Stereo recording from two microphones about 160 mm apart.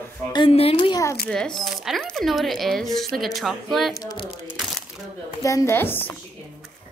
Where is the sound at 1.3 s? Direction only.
Centre (ahead or behind).